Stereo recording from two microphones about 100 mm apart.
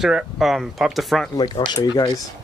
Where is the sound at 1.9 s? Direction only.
45° left (ahead or behind).